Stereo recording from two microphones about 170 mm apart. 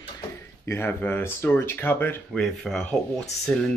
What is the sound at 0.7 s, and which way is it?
Speech, 10° left (ahead or behind).